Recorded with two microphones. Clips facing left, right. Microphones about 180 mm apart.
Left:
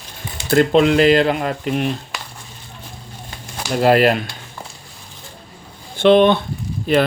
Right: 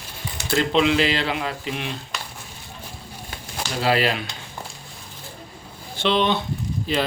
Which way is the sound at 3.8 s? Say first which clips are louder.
Left 8 dB; 50° left (ahead or behind).